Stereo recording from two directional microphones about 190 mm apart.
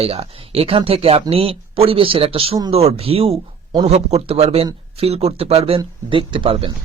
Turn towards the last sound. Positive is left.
turn(degrees=-30)  # may be behind; listen again after turning